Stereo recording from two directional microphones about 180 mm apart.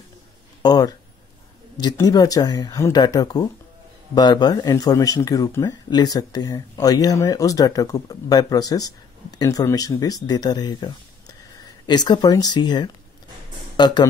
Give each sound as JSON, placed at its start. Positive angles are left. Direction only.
{"t": 0.6, "sound": "speech", "side_deg": 20}